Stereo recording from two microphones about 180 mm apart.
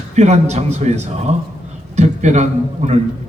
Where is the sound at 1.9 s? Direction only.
40° right (ahead or behind).